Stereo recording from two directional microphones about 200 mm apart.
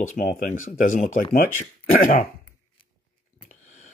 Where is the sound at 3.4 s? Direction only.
35° left (ahead or behind).